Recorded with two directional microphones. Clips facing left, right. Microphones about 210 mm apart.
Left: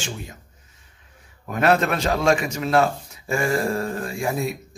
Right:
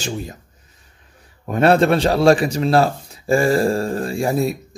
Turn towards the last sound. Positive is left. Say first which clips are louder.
# right 6 dB
turn(degrees=-35)  # may be behind; listen again after turning